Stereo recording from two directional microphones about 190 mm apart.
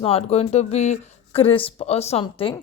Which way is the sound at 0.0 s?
30° left (ahead or behind).